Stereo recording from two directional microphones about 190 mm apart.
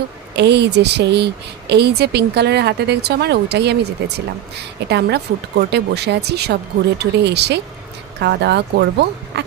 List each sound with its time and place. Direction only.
0.4 s speech: 65° right (ahead or behind)